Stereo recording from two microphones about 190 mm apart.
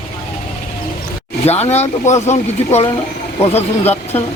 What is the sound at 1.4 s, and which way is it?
Speech, 35° left (ahead or behind).